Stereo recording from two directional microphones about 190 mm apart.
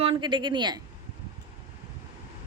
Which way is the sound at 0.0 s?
25° right (ahead or behind).